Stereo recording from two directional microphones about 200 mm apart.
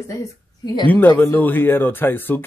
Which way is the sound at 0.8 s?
10° left (ahead or behind).